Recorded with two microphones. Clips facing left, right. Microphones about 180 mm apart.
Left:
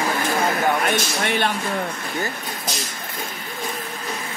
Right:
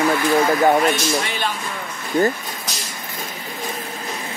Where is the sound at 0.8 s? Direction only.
60° left (ahead or behind).